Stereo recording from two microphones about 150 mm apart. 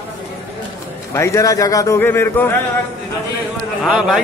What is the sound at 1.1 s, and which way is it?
A man's voice, 20° left (ahead or behind).